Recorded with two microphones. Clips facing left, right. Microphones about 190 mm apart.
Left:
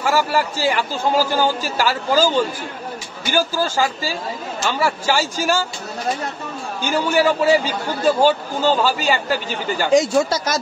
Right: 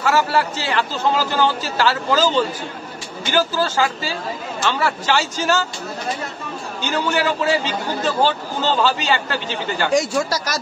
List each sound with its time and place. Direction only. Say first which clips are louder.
0.0 s a man's voice: even; 10° left (ahead or behind)
6.8 s a man's voice: left 3 dB; 10° left (ahead or behind)
9.8 s speech: left 4 dB; 20° left (ahead or behind)